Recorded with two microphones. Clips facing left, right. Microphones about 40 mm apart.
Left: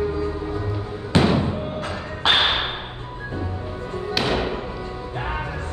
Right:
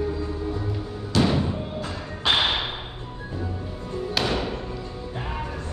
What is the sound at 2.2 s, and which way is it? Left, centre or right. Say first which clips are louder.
Whip: left 3 dB; left.